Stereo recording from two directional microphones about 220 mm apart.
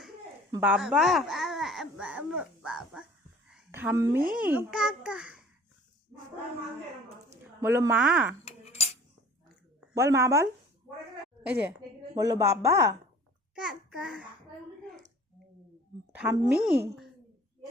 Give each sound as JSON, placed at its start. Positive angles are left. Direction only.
{"t": 0.5, "sound": "speech", "side_deg": -10}
{"t": 3.5, "sound": "a sound", "side_deg": -10}
{"t": 4.2, "sound": "a child's voice", "side_deg": -40}
{"t": 4.4, "sound": "a child's voice", "side_deg": -5}
{"t": 7.6, "sound": "speech", "side_deg": -10}
{"t": 8.4, "sound": "cutlery", "side_deg": 30}
{"t": 9.9, "sound": "speech", "side_deg": -15}
{"t": 12.1, "sound": "speech", "side_deg": -15}
{"t": 13.6, "sound": "a child's voice", "side_deg": 0}
{"t": 16.1, "sound": "a child's voice", "side_deg": -10}